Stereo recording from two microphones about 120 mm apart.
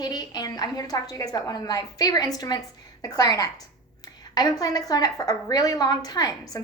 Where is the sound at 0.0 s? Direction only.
35° left (ahead or behind).